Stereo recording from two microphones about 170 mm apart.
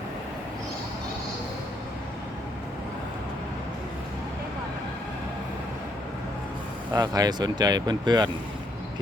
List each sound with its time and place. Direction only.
6.9 s speech: 25° right (ahead or behind)